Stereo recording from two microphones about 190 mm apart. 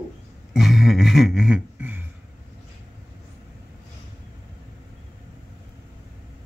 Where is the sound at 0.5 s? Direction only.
Centre (ahead or behind).